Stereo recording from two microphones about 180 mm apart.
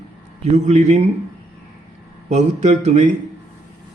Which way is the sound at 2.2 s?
40° right (ahead or behind).